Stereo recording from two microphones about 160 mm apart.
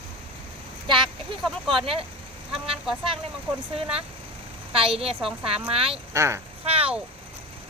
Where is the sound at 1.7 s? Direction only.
35° right (ahead or behind).